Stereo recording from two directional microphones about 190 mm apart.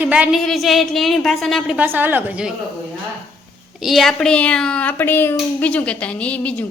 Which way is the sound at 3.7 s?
Centre (ahead or behind).